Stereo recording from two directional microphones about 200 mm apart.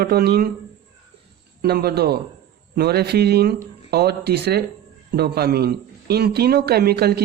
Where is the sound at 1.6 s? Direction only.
50° right (ahead or behind).